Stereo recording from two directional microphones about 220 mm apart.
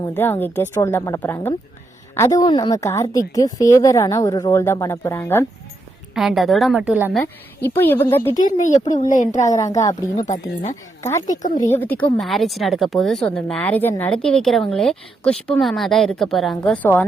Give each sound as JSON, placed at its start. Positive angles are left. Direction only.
{"t": 0.0, "sound": "a woman's voice", "side_deg": 10}
{"t": 6.1, "sound": "speech", "side_deg": 0}
{"t": 8.4, "sound": "a woman's voice", "side_deg": 35}
{"t": 9.6, "sound": "a woman's voice", "side_deg": 15}